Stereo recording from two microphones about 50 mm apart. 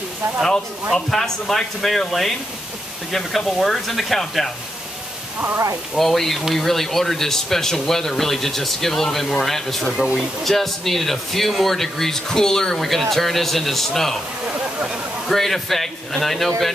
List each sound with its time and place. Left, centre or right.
0.9 s speech: centre
5.9 s speech: centre
15.2 s speech: centre